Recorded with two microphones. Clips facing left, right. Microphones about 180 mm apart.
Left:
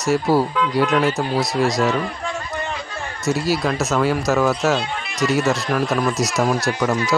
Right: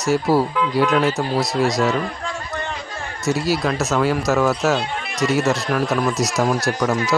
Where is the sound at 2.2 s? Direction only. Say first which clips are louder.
Left 1 dB; 20° left (ahead or behind).